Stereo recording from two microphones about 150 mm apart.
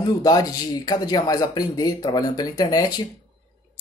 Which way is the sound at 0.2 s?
25° left (ahead or behind).